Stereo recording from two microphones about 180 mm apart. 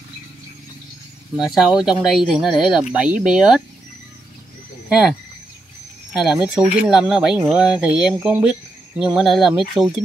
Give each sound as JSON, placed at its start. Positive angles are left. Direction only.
{"t": 1.3, "sound": "speech", "side_deg": -5}
{"t": 4.8, "sound": "speech", "side_deg": -5}
{"t": 6.1, "sound": "speech", "side_deg": -5}